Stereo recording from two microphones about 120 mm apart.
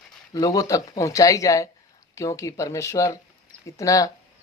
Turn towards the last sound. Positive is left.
turn(degrees=30)  # may be behind; listen again after turning